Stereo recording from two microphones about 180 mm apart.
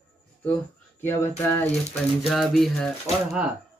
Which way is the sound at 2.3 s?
Centre (ahead or behind).